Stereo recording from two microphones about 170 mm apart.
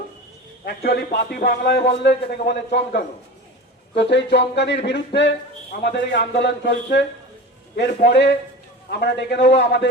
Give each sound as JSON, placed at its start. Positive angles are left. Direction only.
{"t": 0.6, "sound": "a man's voice", "side_deg": 65}
{"t": 3.9, "sound": "a sound", "side_deg": 90}
{"t": 5.8, "sound": "a man's voice", "side_deg": 85}
{"t": 7.8, "sound": "a man's voice", "side_deg": 85}